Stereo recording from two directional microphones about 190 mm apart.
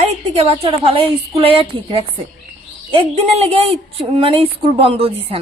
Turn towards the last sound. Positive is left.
turn(degrees=-30)  # may be behind; listen again after turning